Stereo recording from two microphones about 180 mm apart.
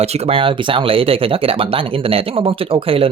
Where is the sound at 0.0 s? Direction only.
35° right (ahead or behind).